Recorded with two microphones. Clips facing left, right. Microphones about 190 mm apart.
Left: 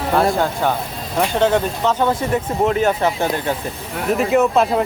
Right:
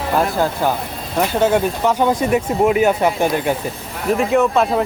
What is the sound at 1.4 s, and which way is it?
Speech, 10° right (ahead or behind).